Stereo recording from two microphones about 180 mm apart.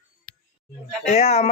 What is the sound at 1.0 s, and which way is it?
Speech, 35° left (ahead or behind).